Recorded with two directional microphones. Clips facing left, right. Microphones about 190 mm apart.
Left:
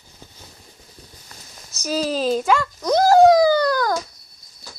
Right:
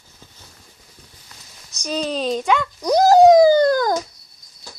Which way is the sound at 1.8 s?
5° left (ahead or behind).